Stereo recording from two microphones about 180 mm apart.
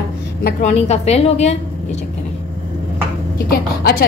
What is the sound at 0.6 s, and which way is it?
A woman's voice, 35° left (ahead or behind).